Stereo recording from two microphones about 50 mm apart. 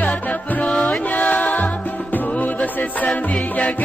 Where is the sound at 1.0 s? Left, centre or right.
Left.